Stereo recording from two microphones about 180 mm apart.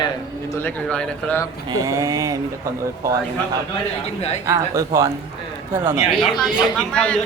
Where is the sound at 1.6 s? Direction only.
20° right (ahead or behind).